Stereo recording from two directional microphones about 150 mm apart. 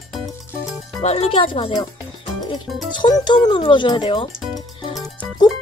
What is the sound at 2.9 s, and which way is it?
Speech, 30° left (ahead or behind).